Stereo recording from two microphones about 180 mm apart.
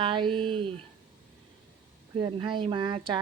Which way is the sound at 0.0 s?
25° right (ahead or behind).